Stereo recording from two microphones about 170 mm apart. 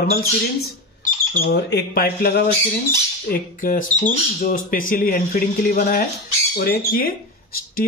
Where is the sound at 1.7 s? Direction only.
60° left (ahead or behind).